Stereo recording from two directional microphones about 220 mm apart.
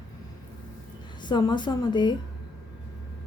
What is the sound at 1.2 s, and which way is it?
Speech, 20° left (ahead or behind).